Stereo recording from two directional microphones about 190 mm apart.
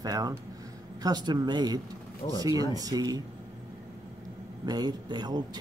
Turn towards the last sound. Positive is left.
turn(degrees=-20)  # may be behind; listen again after turning